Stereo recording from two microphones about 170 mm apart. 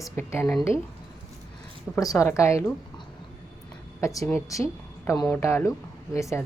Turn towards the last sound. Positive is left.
turn(degrees=15)  # may be behind; listen again after turning